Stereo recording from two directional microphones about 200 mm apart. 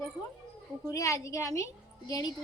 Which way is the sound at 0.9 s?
15° left (ahead or behind).